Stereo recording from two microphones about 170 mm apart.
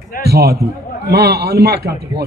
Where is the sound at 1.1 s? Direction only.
75° right (ahead or behind).